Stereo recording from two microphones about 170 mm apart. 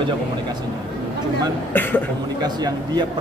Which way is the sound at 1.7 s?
10° left (ahead or behind).